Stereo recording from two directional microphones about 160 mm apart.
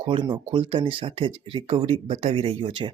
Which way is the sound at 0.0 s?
30° right (ahead or behind).